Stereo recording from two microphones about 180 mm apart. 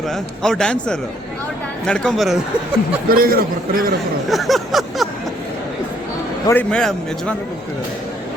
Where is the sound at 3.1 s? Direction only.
55° right (ahead or behind).